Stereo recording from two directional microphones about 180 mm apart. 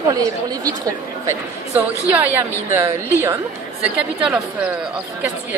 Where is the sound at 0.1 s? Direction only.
20° right (ahead or behind).